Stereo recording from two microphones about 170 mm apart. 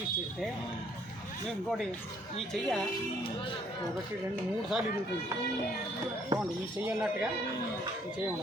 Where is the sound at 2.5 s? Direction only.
5° left (ahead or behind).